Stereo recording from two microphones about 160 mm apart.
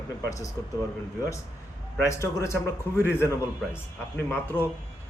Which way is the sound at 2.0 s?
20° left (ahead or behind).